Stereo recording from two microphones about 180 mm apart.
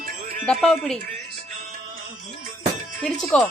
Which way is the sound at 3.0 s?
5° left (ahead or behind).